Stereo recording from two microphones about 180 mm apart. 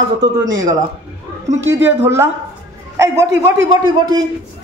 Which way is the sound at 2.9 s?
15° right (ahead or behind).